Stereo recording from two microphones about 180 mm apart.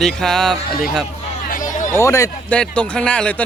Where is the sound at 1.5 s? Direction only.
45° left (ahead or behind).